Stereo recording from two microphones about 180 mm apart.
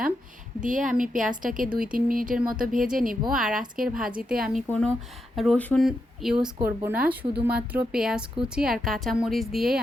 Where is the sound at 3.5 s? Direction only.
50° right (ahead or behind).